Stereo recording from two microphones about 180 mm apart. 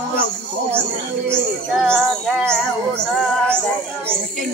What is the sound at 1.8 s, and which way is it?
Child singing, 5° left (ahead or behind).